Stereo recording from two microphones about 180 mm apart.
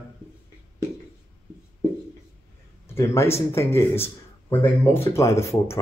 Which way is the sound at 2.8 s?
15° left (ahead or behind).